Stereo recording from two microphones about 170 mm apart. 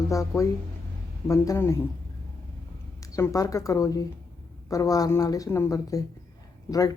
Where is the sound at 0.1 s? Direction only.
20° left (ahead or behind).